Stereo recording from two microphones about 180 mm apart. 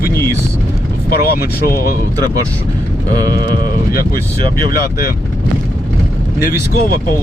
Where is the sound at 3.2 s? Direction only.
55° left (ahead or behind).